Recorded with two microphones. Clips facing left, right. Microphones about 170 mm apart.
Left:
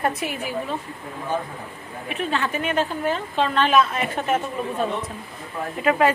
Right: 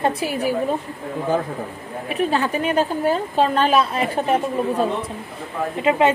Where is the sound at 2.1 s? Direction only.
40° right (ahead or behind).